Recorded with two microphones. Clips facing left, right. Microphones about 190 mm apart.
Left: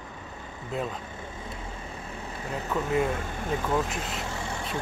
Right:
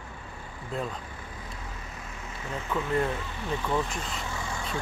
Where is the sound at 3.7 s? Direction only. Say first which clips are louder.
Even; 5° left (ahead or behind).